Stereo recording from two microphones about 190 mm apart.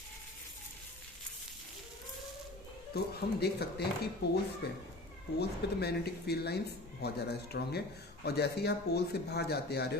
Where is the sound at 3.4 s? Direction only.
60° left (ahead or behind).